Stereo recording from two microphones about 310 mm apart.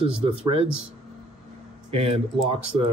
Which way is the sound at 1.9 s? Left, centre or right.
Centre.